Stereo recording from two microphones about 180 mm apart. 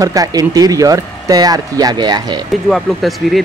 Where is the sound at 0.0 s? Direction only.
20° right (ahead or behind).